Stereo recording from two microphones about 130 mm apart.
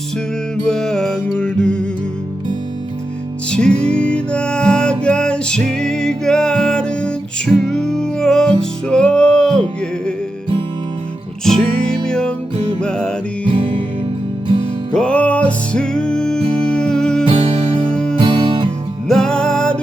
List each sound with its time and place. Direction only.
0.7 s music: 5° left (ahead or behind)
3.5 s music: 5° left (ahead or behind)
12.0 s music: 5° left (ahead or behind)
13.4 s music: 45° right (ahead or behind)
14.9 s music: 10° left (ahead or behind)
17.2 s music: 50° right (ahead or behind)
17.9 s music: 5° left (ahead or behind)
18.2 s music: 45° right (ahead or behind)
19.0 s music: 5° left (ahead or behind)